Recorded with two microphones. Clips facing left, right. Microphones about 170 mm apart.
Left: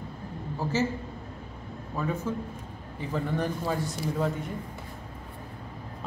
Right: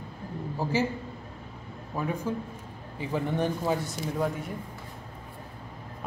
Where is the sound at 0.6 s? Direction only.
15° right (ahead or behind).